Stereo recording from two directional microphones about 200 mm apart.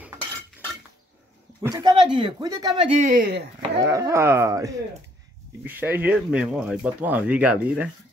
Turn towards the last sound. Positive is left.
turn(degrees=-5)  # may be behind; listen again after turning